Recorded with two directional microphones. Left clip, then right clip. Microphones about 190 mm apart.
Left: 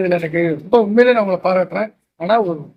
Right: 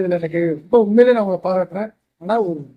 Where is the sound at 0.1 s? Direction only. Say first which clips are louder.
Left 2 dB; 10° right (ahead or behind).